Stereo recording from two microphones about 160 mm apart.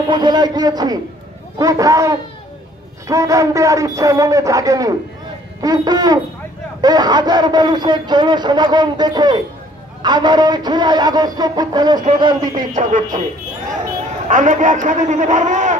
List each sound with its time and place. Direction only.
0.1 s speech: 25° right (ahead or behind)
12.7 s a man's voice: 50° right (ahead or behind)
14.2 s a man's voice: 50° right (ahead or behind)